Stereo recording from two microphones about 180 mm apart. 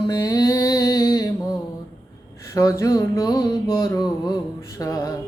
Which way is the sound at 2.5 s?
15° left (ahead or behind).